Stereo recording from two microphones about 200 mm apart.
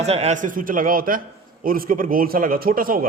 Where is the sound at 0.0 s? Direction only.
30° right (ahead or behind).